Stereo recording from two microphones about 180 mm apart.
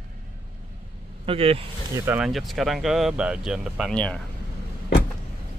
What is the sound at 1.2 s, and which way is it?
Speech, 30° right (ahead or behind).